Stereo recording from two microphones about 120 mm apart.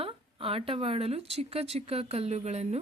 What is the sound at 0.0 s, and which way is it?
Speech, 50° right (ahead or behind).